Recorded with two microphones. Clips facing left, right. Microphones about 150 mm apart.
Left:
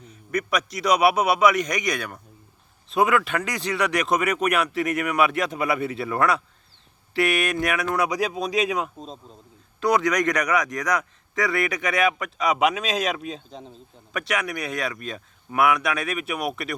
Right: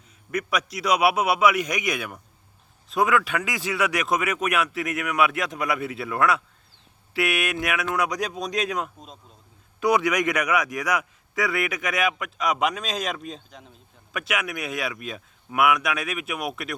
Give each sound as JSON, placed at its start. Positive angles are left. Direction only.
{"t": 0.3, "sound": "a man's voice", "side_deg": 0}
{"t": 9.8, "sound": "a man's voice", "side_deg": -10}
{"t": 13.5, "sound": "speech", "side_deg": 30}
{"t": 14.1, "sound": "a man's voice", "side_deg": 0}